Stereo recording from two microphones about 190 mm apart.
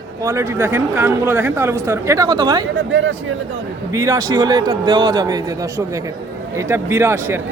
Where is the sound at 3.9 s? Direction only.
15° right (ahead or behind).